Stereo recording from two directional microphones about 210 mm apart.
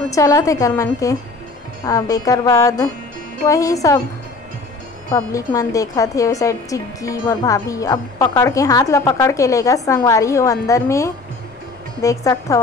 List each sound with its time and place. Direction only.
0.1 s a woman's voice: 15° left (ahead or behind)
5.1 s a woman's voice: 15° left (ahead or behind)